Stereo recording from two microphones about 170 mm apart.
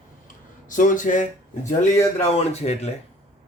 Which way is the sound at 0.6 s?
50° left (ahead or behind).